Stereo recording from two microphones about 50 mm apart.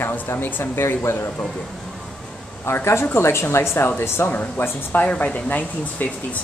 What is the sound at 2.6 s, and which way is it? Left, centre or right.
Speech, left.